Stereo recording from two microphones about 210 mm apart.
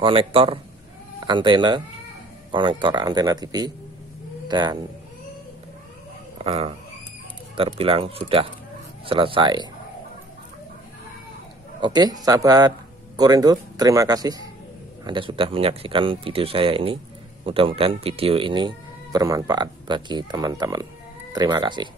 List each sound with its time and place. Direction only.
0.0 s speech: 25° right (ahead or behind)
6.3 s a sound: 30° right (ahead or behind)
7.5 s speech: 25° right (ahead or behind)
11.8 s speech: 20° right (ahead or behind)